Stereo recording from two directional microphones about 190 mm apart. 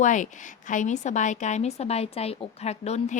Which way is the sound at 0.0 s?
40° left (ahead or behind).